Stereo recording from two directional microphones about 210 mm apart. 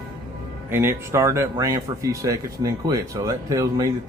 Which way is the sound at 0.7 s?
10° right (ahead or behind).